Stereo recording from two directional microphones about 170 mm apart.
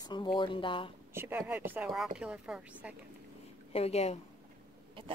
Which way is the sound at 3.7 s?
35° left (ahead or behind).